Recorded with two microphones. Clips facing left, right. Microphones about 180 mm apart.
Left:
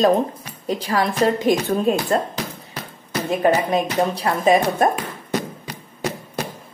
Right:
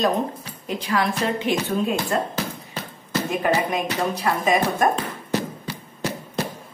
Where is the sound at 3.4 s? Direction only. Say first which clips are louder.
Left 5 dB; 30° left (ahead or behind).